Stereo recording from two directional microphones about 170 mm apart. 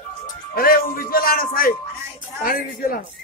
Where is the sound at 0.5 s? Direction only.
60° left (ahead or behind).